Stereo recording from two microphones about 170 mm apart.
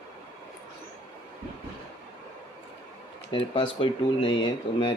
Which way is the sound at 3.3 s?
30° left (ahead or behind).